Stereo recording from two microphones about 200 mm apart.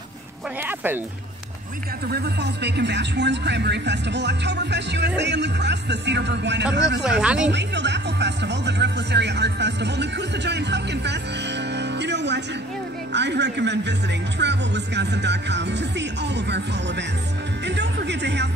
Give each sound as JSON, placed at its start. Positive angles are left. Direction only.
{"t": 2.0, "sound": "speech", "side_deg": -55}
{"t": 7.0, "sound": "speech", "side_deg": -5}
{"t": 7.5, "sound": "speech", "side_deg": -60}